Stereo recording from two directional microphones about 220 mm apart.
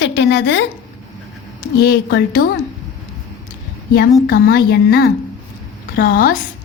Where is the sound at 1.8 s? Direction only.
50° left (ahead or behind).